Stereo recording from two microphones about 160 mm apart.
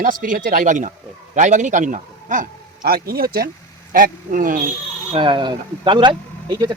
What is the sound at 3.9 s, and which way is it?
Speech, 60° right (ahead or behind).